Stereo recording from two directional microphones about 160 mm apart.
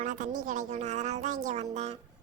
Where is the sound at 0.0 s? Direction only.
50° right (ahead or behind).